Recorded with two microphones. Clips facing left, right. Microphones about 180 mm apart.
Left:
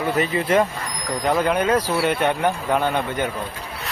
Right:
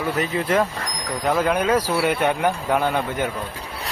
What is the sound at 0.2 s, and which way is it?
A man's voice, centre (ahead or behind).